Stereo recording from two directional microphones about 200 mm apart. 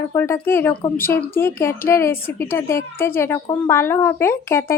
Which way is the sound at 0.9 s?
10° left (ahead or behind).